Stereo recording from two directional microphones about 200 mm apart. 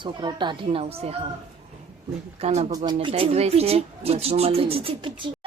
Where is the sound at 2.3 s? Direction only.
30° right (ahead or behind).